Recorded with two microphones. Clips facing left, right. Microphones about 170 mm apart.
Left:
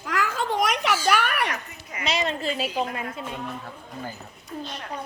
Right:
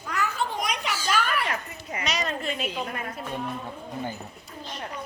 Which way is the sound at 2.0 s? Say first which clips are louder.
Left 4 dB; 25° left (ahead or behind).